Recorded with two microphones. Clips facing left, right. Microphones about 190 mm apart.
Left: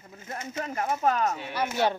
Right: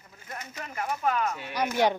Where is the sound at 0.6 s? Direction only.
40° left (ahead or behind).